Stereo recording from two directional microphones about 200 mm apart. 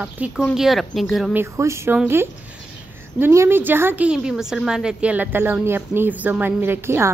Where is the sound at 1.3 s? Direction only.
15° right (ahead or behind).